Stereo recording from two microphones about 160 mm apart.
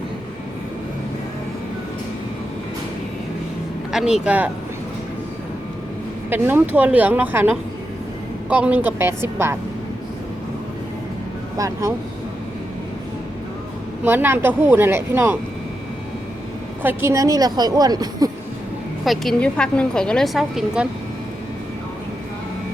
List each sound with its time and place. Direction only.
3.9 s a woman's voice: 5° right (ahead or behind)
6.3 s speech: 15° right (ahead or behind)
11.5 s a woman's voice: 20° right (ahead or behind)
14.0 s speech: 15° right (ahead or behind)
16.8 s a woman's voice: 15° right (ahead or behind)
19.0 s a woman's voice: centre (ahead or behind)